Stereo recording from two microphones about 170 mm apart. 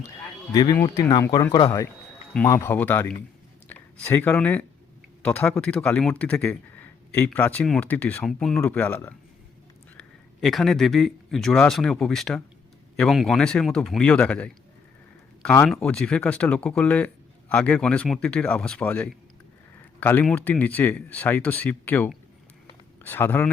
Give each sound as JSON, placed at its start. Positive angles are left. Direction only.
{"t": 0.5, "sound": "speech", "side_deg": 20}
{"t": 15.6, "sound": "speech", "side_deg": 5}